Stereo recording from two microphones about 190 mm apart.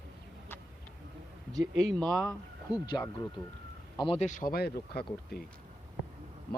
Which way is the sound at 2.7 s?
20° left (ahead or behind).